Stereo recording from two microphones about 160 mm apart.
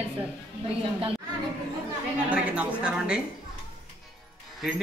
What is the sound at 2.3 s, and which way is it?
Speech, 5° right (ahead or behind).